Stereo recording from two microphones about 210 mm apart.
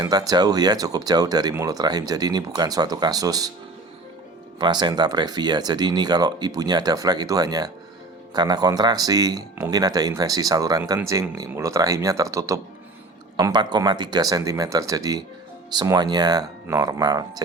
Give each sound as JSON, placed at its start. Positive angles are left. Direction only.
{"t": 0.0, "sound": "speech", "side_deg": -20}
{"t": 4.5, "sound": "speech", "side_deg": -20}